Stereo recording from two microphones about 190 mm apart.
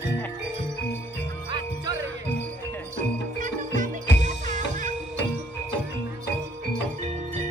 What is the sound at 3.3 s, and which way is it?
Music, 40° right (ahead or behind).